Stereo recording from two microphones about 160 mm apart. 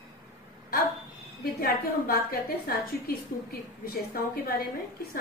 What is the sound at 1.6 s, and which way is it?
A woman's voice, 70° left (ahead or behind).